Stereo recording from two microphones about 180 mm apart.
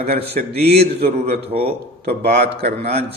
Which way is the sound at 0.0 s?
65° right (ahead or behind).